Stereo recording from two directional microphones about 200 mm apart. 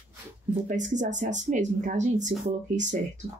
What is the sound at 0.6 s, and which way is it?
Speech, 35° right (ahead or behind).